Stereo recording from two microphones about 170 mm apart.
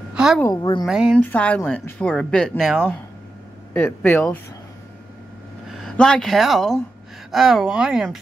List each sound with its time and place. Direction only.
0.1 s a sound: 5° right (ahead or behind)
0.4 s a woman's voice: 20° left (ahead or behind)
0.8 s speech: 5° right (ahead or behind)
1.2 s speech: 10° left (ahead or behind)
3.7 s speech: 10° left (ahead or behind)
5.7 s speech: centre (ahead or behind)